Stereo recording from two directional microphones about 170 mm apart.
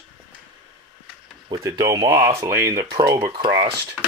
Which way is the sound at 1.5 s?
25° right (ahead or behind).